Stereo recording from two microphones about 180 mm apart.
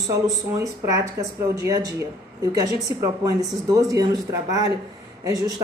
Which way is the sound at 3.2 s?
20° right (ahead or behind).